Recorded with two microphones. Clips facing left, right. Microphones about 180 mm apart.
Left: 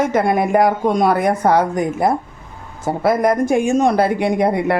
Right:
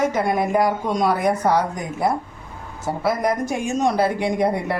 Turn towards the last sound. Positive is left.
turn(degrees=65)  # may be behind; listen again after turning